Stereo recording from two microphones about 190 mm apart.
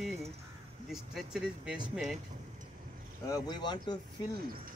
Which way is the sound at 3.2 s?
20° left (ahead or behind).